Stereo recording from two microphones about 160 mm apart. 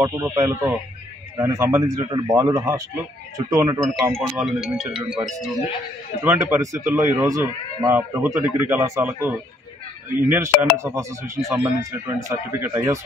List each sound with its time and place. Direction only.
0.0 s speech: 15° right (ahead or behind)
4.1 s speech: centre (ahead or behind)
6.2 s speech: 20° right (ahead or behind)